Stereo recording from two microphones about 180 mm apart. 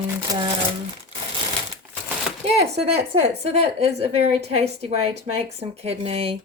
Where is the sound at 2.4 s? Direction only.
35° right (ahead or behind).